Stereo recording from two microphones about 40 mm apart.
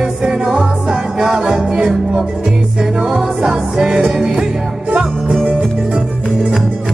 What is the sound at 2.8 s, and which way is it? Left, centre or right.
Music, centre.